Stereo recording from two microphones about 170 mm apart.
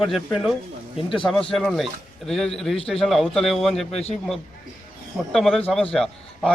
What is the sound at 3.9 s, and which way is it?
Speech, 35° left (ahead or behind).